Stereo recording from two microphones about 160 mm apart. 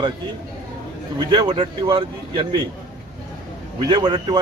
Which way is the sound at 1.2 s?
30° right (ahead or behind).